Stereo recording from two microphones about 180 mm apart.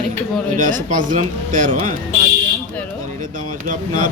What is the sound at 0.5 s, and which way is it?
A man's voice, 45° right (ahead or behind).